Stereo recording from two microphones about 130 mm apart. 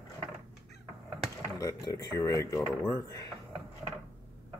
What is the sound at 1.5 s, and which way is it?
Speech, 25° left (ahead or behind).